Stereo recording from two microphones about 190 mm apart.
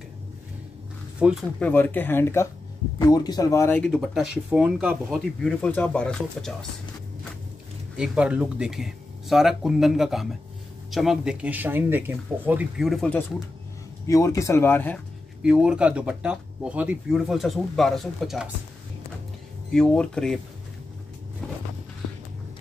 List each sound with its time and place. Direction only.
1.2 s speech: 5° right (ahead or behind)
1.6 s speech: 10° left (ahead or behind)
8.0 s speech: 5° right (ahead or behind)
14.0 s speech: 15° left (ahead or behind)
15.4 s speech: 5° right (ahead or behind)
19.7 s speech: 5° left (ahead or behind)